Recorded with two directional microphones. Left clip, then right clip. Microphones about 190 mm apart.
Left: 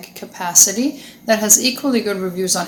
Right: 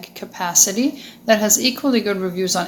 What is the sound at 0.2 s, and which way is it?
A woman's voice, 25° right (ahead or behind).